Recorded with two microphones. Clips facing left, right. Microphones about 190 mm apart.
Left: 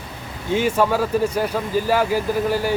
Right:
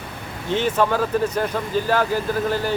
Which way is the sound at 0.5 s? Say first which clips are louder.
Left 1 dB; 10° left (ahead or behind).